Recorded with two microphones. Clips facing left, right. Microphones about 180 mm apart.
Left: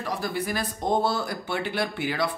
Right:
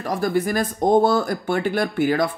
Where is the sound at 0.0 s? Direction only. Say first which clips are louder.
Right 8 dB; 45° right (ahead or behind).